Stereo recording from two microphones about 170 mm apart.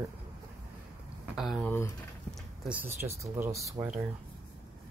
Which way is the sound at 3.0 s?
15° right (ahead or behind).